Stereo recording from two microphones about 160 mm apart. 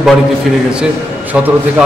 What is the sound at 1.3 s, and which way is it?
Speech, 5° right (ahead or behind).